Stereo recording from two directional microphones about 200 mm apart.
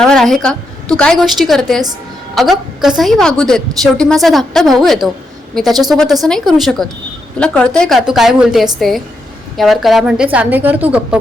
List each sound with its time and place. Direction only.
0.0 s a woman's voice: centre (ahead or behind)